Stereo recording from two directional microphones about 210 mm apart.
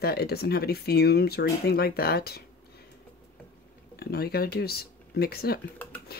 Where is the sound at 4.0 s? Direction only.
50° left (ahead or behind).